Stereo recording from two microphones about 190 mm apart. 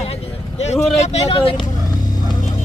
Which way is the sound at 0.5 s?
35° left (ahead or behind).